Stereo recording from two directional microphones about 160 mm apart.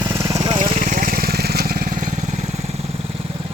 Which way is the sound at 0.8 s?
55° right (ahead or behind).